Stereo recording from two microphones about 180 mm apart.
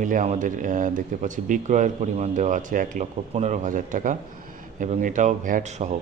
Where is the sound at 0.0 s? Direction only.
45° right (ahead or behind).